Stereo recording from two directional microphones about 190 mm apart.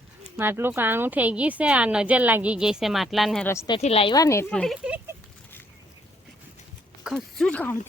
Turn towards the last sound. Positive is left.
turn(degrees=5)  # may be behind; listen again after turning